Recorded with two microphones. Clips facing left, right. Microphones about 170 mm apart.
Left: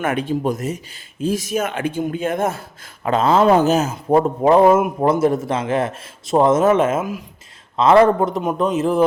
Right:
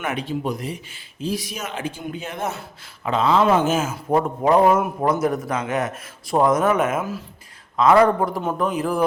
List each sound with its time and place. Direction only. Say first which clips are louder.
0.0 s speech: left 5 dB; 50° left (ahead or behind)
4.2 s a man's voice: left 4 dB; 25° left (ahead or behind)
7.0 s speech: left 3 dB; 15° left (ahead or behind)
7.8 s a man's voice: left 3 dB; 25° left (ahead or behind)